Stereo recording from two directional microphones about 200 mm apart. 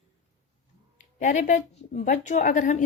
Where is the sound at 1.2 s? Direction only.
40° left (ahead or behind).